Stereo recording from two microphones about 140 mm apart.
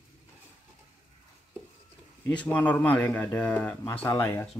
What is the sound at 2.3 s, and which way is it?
Speech, 10° left (ahead or behind).